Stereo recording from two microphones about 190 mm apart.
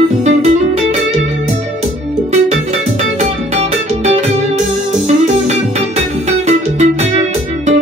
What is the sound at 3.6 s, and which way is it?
Music, 35° right (ahead or behind).